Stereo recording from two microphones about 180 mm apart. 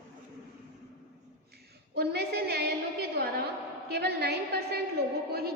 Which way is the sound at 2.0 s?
60° right (ahead or behind).